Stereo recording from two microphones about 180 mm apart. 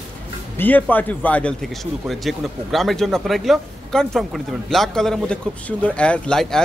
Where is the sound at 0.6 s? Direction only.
10° left (ahead or behind).